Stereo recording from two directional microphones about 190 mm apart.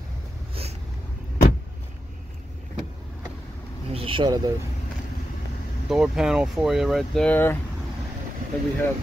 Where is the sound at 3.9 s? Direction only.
30° right (ahead or behind).